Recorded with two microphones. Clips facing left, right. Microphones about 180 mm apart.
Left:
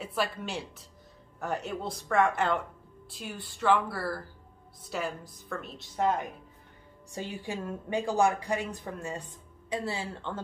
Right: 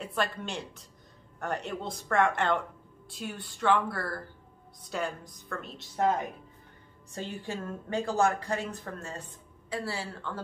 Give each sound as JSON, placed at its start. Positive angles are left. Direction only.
{"t": 0.0, "sound": "speech", "side_deg": 5}
{"t": 7.1, "sound": "a woman's voice", "side_deg": 10}